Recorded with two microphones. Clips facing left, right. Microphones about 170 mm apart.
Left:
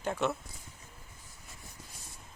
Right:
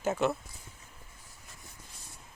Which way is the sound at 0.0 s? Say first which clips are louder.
Right 3 dB; 5° right (ahead or behind).